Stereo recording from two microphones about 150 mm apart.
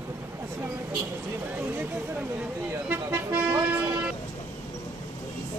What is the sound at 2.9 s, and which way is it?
Vehicle, 15° right (ahead or behind).